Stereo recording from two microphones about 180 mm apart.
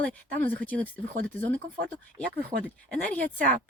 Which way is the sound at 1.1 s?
45° right (ahead or behind).